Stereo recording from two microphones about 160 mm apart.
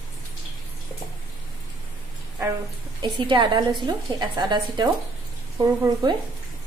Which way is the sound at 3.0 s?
30° right (ahead or behind).